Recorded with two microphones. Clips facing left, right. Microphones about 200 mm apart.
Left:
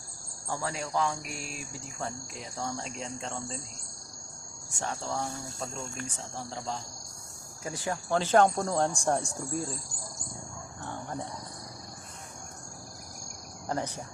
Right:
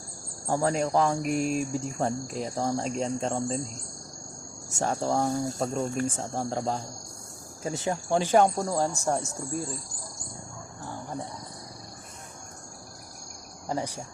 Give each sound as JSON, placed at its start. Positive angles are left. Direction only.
{"t": 0.4, "sound": "cricket", "side_deg": -45}
{"t": 4.7, "sound": "cricket", "side_deg": -40}
{"t": 6.0, "sound": "speech", "side_deg": -50}
{"t": 7.6, "sound": "speech", "side_deg": -25}
{"t": 13.7, "sound": "speech", "side_deg": -10}